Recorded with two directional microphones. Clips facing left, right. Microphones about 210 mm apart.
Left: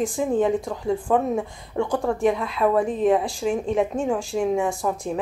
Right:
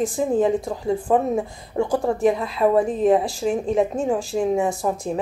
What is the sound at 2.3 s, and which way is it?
Speech, 30° right (ahead or behind).